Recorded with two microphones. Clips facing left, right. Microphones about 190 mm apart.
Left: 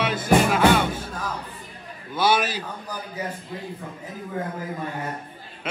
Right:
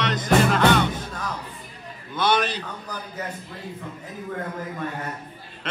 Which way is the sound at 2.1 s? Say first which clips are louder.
Left 1 dB; 5° left (ahead or behind).